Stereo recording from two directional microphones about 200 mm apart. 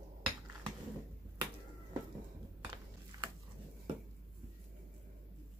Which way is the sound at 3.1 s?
20° right (ahead or behind).